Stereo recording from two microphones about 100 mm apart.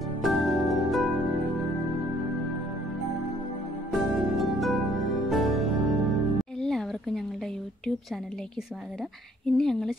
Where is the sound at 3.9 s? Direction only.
Centre (ahead or behind).